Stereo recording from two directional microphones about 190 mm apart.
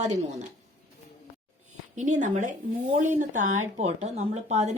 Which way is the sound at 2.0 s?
40° right (ahead or behind).